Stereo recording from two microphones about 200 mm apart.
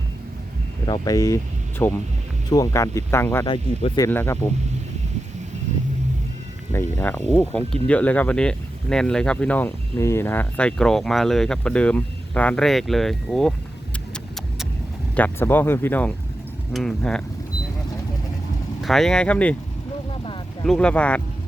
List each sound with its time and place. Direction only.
0.9 s speech: 15° left (ahead or behind)
6.7 s speech: 10° left (ahead or behind)
15.1 s speech: 10° left (ahead or behind)
18.8 s speech: centre (ahead or behind)
20.7 s speech: 5° left (ahead or behind)